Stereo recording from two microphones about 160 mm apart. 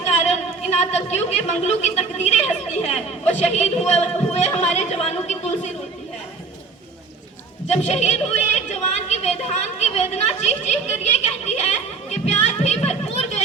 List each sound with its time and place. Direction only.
0.3 s a woman's voice: 45° left (ahead or behind)
7.7 s a woman's voice: 45° left (ahead or behind)
12.1 s a sound: 45° left (ahead or behind)